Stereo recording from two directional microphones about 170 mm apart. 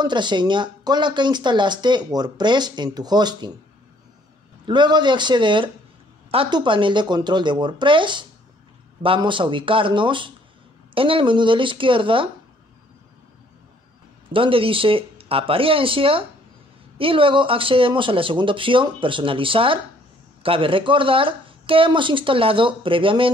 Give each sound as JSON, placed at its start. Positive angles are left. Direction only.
{"t": 0.0, "sound": "speech", "side_deg": -25}
{"t": 4.6, "sound": "speech", "side_deg": -25}
{"t": 14.3, "sound": "speech", "side_deg": -30}